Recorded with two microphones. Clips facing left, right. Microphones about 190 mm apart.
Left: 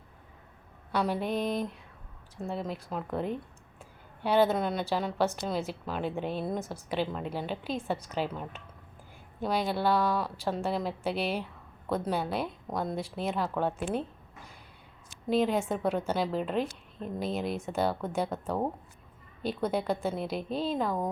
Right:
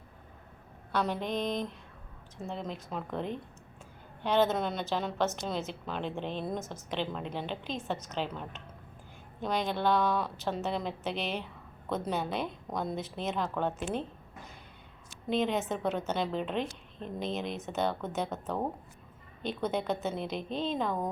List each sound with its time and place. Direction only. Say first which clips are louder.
0.9 s a woman's voice: left 2 dB; 10° left (ahead or behind)
15.3 s a woman's voice: left 3 dB; 5° left (ahead or behind)